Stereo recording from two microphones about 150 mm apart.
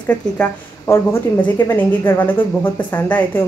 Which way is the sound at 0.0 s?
10° left (ahead or behind).